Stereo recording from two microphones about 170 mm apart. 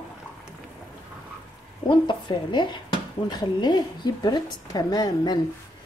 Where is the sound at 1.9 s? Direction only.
30° left (ahead or behind).